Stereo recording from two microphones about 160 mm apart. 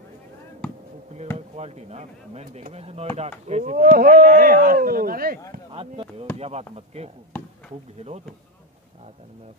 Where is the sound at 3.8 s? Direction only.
65° right (ahead or behind).